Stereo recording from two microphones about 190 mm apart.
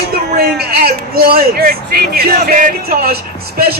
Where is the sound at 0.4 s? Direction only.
55° right (ahead or behind).